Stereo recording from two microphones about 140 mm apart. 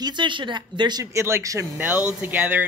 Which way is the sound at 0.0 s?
35° right (ahead or behind).